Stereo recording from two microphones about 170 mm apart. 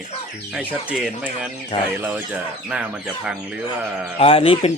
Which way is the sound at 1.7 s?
40° left (ahead or behind).